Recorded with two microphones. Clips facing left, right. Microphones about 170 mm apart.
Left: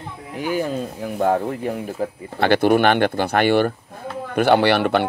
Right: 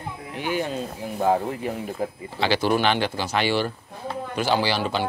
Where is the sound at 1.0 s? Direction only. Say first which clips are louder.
Left 2 dB; 55° left (ahead or behind).